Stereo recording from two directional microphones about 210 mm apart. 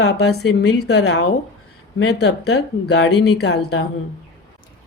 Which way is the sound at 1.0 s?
80° left.